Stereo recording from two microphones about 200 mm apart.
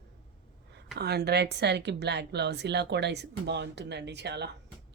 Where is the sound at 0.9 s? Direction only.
55° right (ahead or behind).